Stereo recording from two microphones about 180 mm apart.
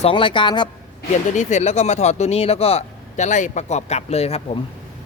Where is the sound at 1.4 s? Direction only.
40° left (ahead or behind).